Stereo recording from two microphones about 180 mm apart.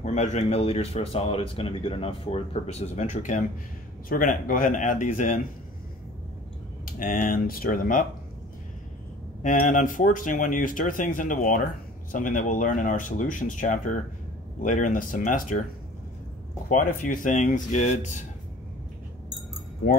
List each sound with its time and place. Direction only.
0.0 s speech: 40° left (ahead or behind)
7.0 s speech: 50° left (ahead or behind)
9.4 s speech: 45° left (ahead or behind)
16.6 s speech: 50° left (ahead or behind)